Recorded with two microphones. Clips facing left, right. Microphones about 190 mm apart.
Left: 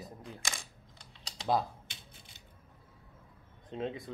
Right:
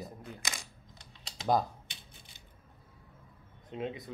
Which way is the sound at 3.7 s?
35° left (ahead or behind).